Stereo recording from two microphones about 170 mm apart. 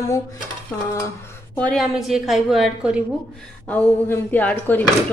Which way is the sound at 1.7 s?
Centre (ahead or behind).